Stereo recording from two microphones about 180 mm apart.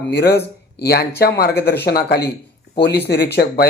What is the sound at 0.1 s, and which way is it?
Speech, 65° left (ahead or behind).